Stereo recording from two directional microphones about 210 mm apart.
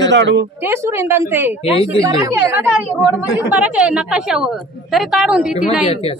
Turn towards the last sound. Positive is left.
turn(degrees=-5)  # may be behind; listen again after turning